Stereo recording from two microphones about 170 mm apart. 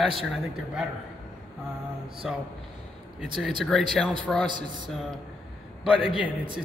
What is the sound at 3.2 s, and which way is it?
Speech, 5° right (ahead or behind).